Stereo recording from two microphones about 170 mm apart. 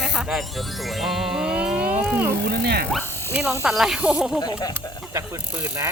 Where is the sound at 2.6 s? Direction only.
75° right (ahead or behind).